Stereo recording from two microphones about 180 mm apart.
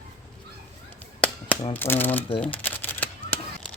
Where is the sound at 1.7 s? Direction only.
10° left (ahead or behind).